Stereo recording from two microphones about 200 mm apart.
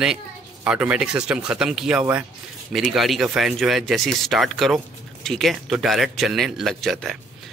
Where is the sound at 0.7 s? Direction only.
5° right (ahead or behind).